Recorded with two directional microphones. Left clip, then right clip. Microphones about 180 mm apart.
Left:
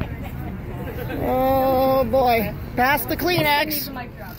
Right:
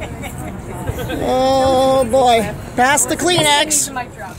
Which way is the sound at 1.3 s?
5° left (ahead or behind).